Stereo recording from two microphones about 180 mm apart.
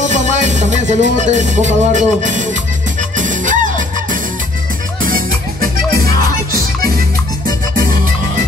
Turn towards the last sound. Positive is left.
turn(degrees=-55)  # may be behind; listen again after turning